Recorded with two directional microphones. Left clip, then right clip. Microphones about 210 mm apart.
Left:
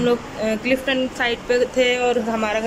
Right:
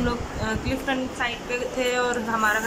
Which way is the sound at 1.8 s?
10° left (ahead or behind).